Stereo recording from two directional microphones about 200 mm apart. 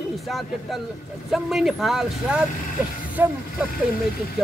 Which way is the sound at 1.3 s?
Centre (ahead or behind).